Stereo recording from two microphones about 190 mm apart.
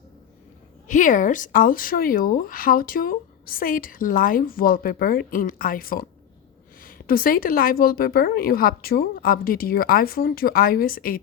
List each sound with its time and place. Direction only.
0.9 s speech: 40° left (ahead or behind)